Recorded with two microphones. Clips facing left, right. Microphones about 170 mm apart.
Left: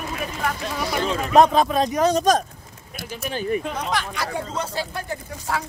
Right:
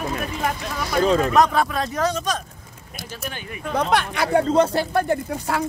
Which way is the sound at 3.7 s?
60° right (ahead or behind).